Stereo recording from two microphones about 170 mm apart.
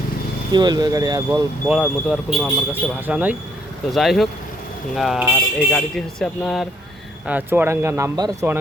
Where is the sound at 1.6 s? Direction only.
5° right (ahead or behind).